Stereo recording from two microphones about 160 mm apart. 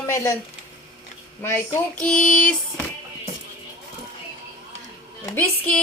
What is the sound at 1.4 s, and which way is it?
Speech, 15° left (ahead or behind).